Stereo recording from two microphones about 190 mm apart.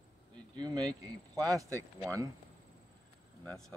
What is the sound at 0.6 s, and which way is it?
Speech, 20° right (ahead or behind).